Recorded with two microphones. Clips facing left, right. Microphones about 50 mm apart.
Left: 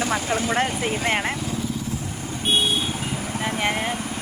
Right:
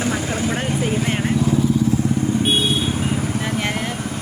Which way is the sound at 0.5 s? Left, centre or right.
Left.